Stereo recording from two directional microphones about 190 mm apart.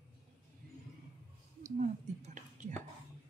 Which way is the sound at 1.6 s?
40° right (ahead or behind).